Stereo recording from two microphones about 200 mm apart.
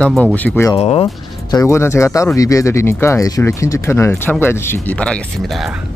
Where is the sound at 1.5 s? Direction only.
15° left (ahead or behind).